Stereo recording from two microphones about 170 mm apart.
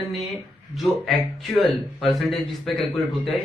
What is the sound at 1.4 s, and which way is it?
A man's voice, centre (ahead or behind).